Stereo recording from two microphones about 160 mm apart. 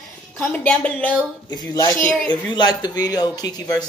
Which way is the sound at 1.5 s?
25° left (ahead or behind).